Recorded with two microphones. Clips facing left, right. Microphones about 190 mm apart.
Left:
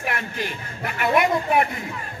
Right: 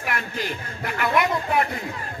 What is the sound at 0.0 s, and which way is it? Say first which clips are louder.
Speech: left 1 dB; 20° left (ahead or behind).